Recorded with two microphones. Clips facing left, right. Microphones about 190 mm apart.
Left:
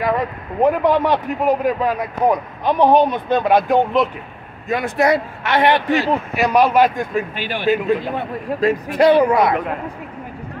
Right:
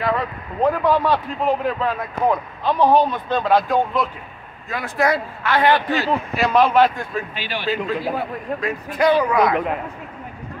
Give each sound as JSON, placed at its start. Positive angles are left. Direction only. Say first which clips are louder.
{"t": 0.0, "sound": "a man's voice", "louder": "left 2 dB", "side_deg": 15}
{"t": 7.3, "sound": "speech", "louder": "left 3 dB", "side_deg": 50}
{"t": 8.0, "sound": "a man's voice", "louder": "even", "side_deg": -5}
{"t": 8.5, "sound": "speech", "louder": "left 7 dB", "side_deg": 30}